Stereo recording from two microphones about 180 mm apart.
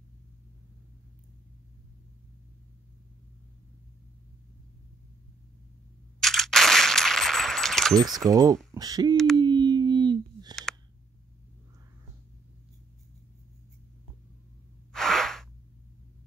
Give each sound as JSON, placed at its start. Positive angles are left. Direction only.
{"t": 6.1, "sound": "gunshot", "side_deg": 0}
{"t": 8.0, "sound": "speech", "side_deg": -20}
{"t": 9.1, "sound": "a sound", "side_deg": 0}
{"t": 9.4, "sound": "busy signal", "side_deg": -25}
{"t": 10.5, "sound": "a sound", "side_deg": 0}
{"t": 14.9, "sound": "gasp", "side_deg": 0}